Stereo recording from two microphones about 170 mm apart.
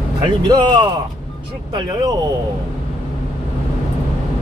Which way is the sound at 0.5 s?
25° right (ahead or behind).